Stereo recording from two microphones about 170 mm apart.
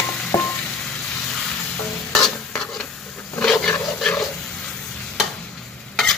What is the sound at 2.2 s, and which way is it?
Stir, centre (ahead or behind).